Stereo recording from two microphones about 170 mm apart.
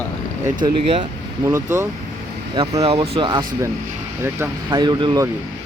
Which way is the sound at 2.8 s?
35° right (ahead or behind).